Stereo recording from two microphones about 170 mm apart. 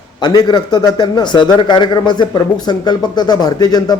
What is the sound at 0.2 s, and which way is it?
A man's voice, 25° left (ahead or behind).